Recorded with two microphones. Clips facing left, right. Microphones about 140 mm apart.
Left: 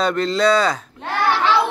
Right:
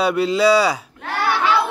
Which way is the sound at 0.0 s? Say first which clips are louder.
Right 1 dB; 10° right (ahead or behind).